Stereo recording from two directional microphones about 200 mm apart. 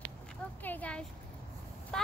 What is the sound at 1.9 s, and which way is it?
Vehicle, 5° left (ahead or behind).